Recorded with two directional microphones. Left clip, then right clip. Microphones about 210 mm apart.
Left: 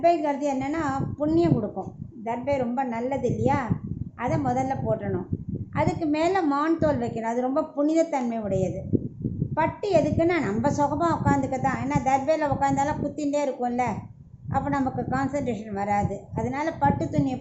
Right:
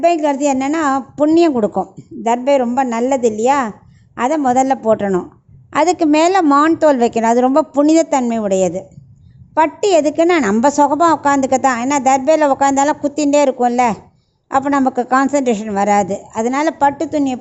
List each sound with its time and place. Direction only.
0.0 s a woman's voice: 45° right (ahead or behind)